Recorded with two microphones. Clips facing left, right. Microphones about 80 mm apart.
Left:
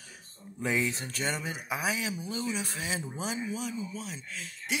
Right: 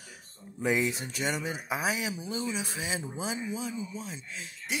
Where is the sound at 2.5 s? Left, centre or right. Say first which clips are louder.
Even; centre.